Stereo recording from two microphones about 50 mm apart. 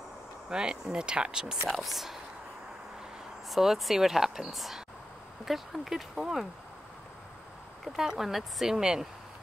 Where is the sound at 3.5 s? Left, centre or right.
Centre.